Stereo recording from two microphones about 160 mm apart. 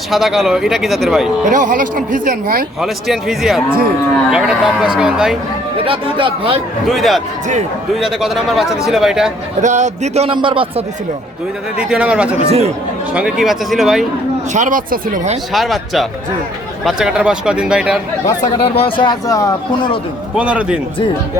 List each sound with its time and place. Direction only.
0.1 s speech: centre (ahead or behind)
1.5 s speech: 55° right (ahead or behind)
2.8 s speech: centre (ahead or behind)
5.8 s a man's voice: 35° right (ahead or behind)
6.8 s speech: centre (ahead or behind)
9.6 s a man's voice: 50° right (ahead or behind); by 10.8 s 35° right (ahead or behind)
11.8 s speech: 5° right (ahead or behind)
12.5 s a man's voice: 40° right (ahead or behind)
13.1 s speech: 5° right (ahead or behind)
14.5 s speech: 55° right (ahead or behind)
15.5 s speech: centre (ahead or behind)
18.7 s speech: 35° left (ahead or behind)
20.3 s speech: 5° right (ahead or behind)